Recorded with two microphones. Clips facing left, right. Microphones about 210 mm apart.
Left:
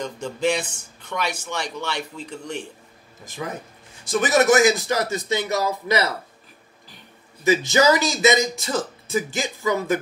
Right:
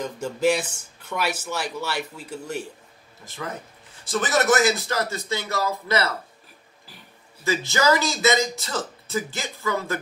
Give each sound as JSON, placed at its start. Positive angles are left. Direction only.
{"t": 0.0, "sound": "speech", "side_deg": -5}
{"t": 3.3, "sound": "a man's voice", "side_deg": 15}
{"t": 7.4, "sound": "a man's voice", "side_deg": 15}